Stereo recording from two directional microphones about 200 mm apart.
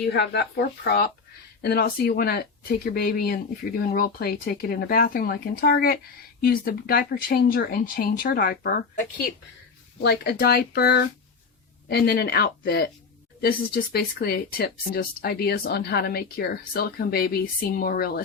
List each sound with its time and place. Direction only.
0.1 s speech: 55° left (ahead or behind)
10.0 s speech: 55° left (ahead or behind)